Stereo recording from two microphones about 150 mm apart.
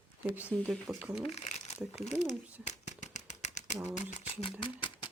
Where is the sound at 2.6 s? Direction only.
50° left (ahead or behind).